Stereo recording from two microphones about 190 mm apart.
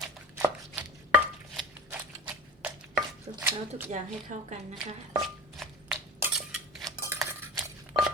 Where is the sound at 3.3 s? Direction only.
30° right (ahead or behind).